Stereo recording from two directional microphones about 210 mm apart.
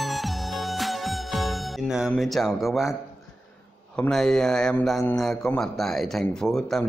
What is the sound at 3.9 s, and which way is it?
A man's voice, 5° left (ahead or behind).